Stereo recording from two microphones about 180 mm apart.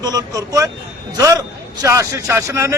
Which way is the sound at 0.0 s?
20° right (ahead or behind).